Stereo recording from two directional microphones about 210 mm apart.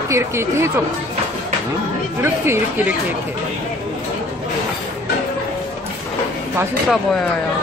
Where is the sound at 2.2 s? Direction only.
10° right (ahead or behind).